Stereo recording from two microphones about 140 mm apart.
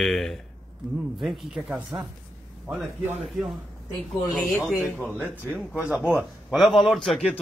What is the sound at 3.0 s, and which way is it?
Speech, 10° right (ahead or behind).